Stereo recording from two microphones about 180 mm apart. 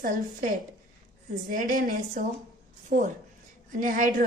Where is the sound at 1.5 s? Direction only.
50° right (ahead or behind).